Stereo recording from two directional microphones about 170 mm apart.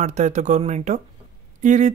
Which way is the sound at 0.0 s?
45° right (ahead or behind).